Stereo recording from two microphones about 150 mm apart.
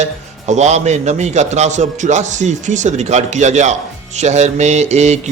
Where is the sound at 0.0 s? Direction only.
50° right (ahead or behind).